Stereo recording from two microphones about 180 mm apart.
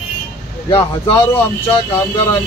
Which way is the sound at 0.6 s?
30° left (ahead or behind).